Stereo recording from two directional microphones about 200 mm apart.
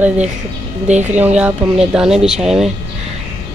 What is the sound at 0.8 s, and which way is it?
Speech, 35° right (ahead or behind).